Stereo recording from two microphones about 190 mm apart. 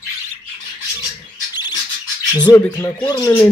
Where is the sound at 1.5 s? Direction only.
20° left (ahead or behind).